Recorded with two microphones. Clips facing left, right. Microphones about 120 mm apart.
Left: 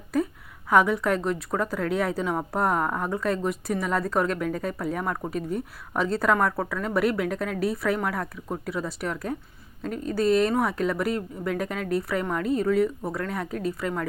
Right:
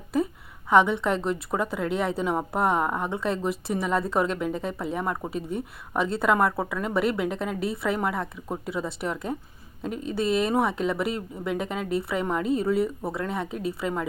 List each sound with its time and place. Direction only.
0.1 s a sound: centre (ahead or behind)
0.7 s a woman's voice: 5° left (ahead or behind); by 3.1 s 15° right (ahead or behind)
3.2 s speech: 25° right (ahead or behind)
3.4 s speech: centre (ahead or behind)
4.4 s speech: 20° right (ahead or behind)
4.9 s a woman's voice: 5° right (ahead or behind)